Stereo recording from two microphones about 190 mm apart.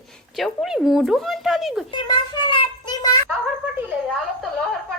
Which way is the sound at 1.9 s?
25° left (ahead or behind).